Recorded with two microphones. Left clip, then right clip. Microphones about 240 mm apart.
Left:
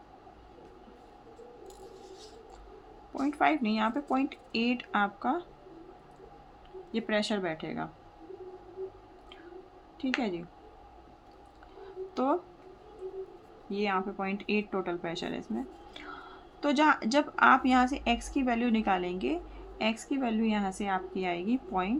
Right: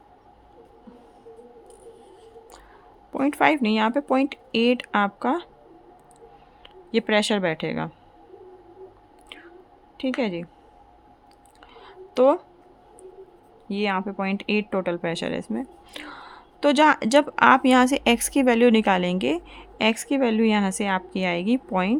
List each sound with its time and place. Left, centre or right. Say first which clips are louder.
3.2 s speech: right 7 dB; right
6.9 s speech: right 9 dB; right
10.2 s speech: right 7 dB; right
12.1 s speech: right 12 dB; right
13.7 s speech: right 5 dB; right